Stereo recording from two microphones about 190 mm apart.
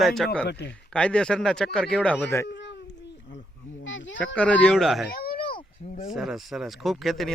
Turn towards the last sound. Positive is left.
turn(degrees=0)  # may be behind; listen again after turning